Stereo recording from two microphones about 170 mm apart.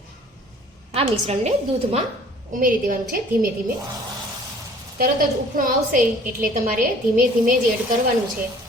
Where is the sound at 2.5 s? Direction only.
50° right (ahead or behind).